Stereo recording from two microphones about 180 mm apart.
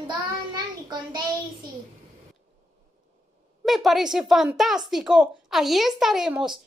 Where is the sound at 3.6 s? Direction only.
Centre (ahead or behind).